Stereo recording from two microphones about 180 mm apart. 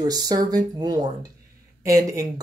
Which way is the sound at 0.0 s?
20° right (ahead or behind).